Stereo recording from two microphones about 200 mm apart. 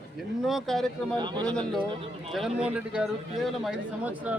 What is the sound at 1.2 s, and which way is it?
Speech, 20° right (ahead or behind).